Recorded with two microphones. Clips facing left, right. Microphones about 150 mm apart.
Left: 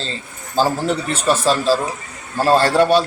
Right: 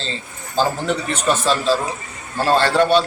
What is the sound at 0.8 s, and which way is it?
Speech, 35° left (ahead or behind).